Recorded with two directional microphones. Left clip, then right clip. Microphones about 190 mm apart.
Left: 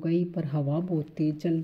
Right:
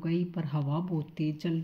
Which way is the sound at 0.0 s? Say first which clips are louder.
Left 5 dB; 20° left (ahead or behind).